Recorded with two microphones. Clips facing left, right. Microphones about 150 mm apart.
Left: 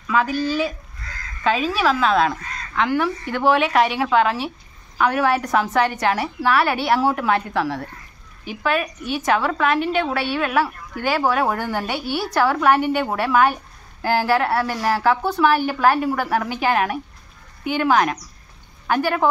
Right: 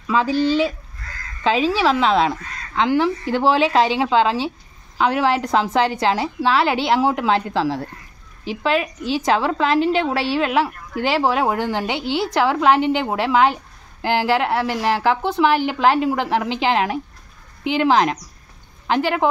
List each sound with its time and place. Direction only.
0.0 s a woman's voice: 25° right (ahead or behind)